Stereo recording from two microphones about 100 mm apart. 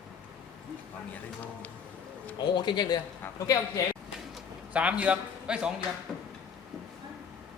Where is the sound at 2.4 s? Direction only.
50° left (ahead or behind).